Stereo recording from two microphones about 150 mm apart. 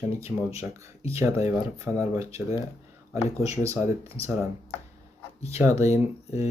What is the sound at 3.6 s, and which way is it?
Speech, 20° right (ahead or behind).